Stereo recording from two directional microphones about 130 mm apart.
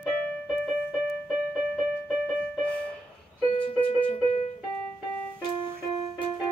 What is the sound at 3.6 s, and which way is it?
Music, 45° left (ahead or behind).